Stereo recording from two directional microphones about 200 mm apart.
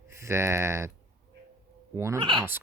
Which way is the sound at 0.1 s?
15° right (ahead or behind).